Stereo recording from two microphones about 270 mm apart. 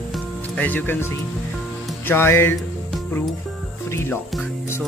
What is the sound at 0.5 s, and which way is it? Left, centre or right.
Speech, centre.